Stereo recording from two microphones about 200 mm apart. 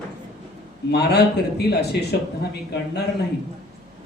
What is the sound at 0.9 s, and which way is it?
Speech, 55° left (ahead or behind).